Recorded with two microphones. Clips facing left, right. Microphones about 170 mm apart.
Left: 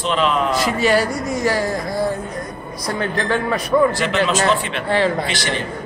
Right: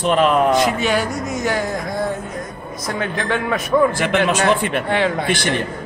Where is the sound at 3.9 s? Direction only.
55° right (ahead or behind).